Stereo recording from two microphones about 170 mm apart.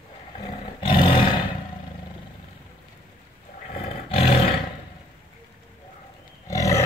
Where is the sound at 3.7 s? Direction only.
35° left (ahead or behind).